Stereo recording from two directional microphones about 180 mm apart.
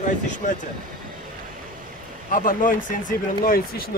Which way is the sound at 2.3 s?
50° left (ahead or behind).